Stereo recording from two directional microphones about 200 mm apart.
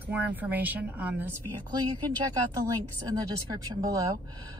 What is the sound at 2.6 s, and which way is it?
Speech, 20° right (ahead or behind).